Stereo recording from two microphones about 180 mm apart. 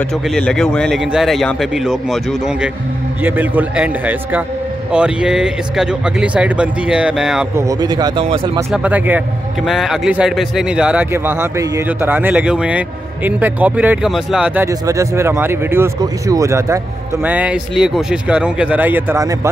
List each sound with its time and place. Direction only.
0.3 s a man's voice: 5° left (ahead or behind)
7.5 s speech: 20° right (ahead or behind)
8.7 s a man's voice: 10° right (ahead or behind)